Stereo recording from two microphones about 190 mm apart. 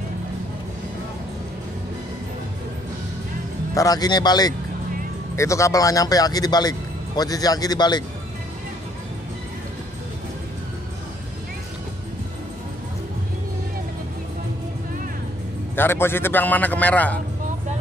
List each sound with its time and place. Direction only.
3.7 s a man's voice: 20° left (ahead or behind)
15.7 s a man's voice: 10° left (ahead or behind)